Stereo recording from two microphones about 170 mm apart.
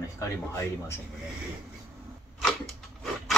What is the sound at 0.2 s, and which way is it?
Speech, 15° left (ahead or behind).